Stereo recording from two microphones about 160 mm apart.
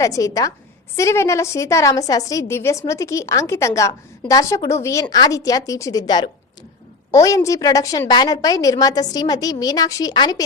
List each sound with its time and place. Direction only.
0.0 s a woman's voice: 20° left (ahead or behind)